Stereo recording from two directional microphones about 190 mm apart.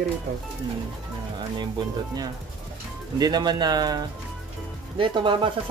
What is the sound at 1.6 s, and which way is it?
Speech, 20° right (ahead or behind).